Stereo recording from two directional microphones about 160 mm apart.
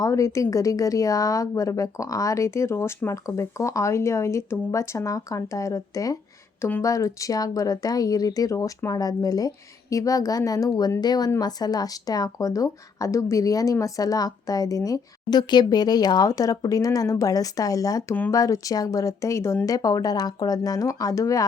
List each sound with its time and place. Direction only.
0.0 s speech: 20° left (ahead or behind)